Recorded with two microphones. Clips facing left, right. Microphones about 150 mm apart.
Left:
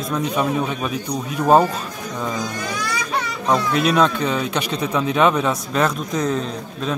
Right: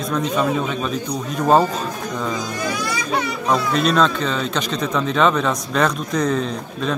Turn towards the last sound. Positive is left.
turn(degrees=0)  # may be behind; listen again after turning